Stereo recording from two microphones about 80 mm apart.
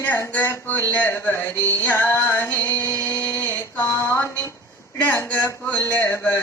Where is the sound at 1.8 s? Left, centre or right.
Left.